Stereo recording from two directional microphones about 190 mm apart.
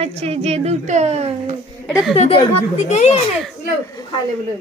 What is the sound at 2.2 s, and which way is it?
Speech, 35° left (ahead or behind).